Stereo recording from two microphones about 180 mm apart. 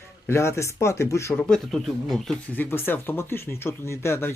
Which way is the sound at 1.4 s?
Centre (ahead or behind).